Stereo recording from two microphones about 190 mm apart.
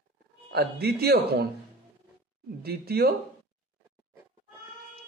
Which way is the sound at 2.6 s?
55° right (ahead or behind).